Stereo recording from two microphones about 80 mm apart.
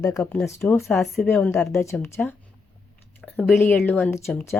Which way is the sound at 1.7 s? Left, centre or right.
Left.